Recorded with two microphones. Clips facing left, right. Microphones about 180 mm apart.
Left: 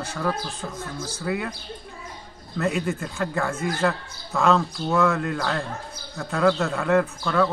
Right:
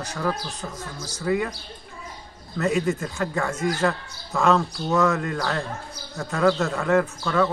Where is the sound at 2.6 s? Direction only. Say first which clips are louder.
Right 2 dB; centre (ahead or behind).